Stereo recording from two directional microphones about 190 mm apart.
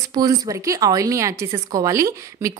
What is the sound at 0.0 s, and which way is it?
Speech, 20° right (ahead or behind).